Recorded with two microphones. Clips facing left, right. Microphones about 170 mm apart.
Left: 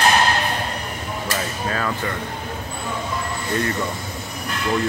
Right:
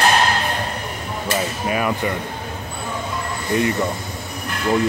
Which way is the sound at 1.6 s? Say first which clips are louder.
Right 3 dB; 15° right (ahead or behind).